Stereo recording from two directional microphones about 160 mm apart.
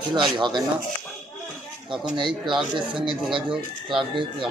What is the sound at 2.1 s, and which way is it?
Speech, 30° right (ahead or behind).